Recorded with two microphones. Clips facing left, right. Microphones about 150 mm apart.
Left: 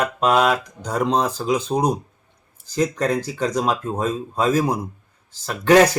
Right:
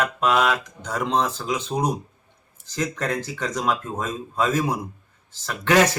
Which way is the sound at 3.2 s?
35° left (ahead or behind).